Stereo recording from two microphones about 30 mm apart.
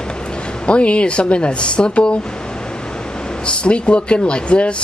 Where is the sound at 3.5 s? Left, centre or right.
Left.